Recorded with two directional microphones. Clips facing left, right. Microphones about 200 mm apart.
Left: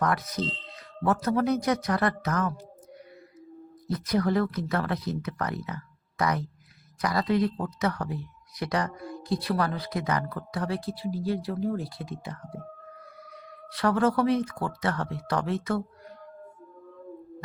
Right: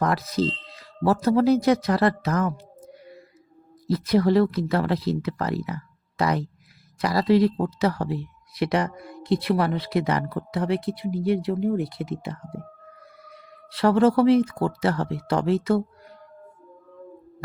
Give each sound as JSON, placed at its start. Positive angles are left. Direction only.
{"t": 0.0, "sound": "speech", "side_deg": -30}
{"t": 3.9, "sound": "speech", "side_deg": -30}
{"t": 13.7, "sound": "speech", "side_deg": -30}